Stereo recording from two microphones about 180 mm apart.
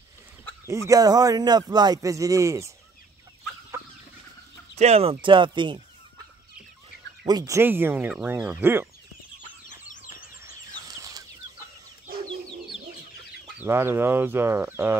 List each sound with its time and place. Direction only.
0.7 s a man's voice: 15° right (ahead or behind)
4.7 s a man's voice: 35° right (ahead or behind)
7.2 s speech: 20° right (ahead or behind)
10.4 s a sound: 20° right (ahead or behind)
13.6 s speech: 15° right (ahead or behind)